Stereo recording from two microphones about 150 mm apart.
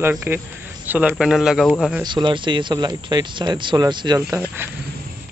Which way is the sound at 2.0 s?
30° right (ahead or behind).